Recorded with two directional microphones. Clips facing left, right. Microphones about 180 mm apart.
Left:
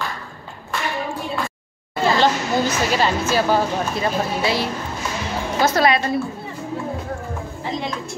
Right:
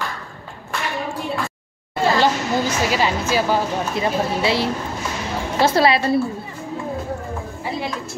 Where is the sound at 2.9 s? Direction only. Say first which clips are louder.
Even; 10° right (ahead or behind).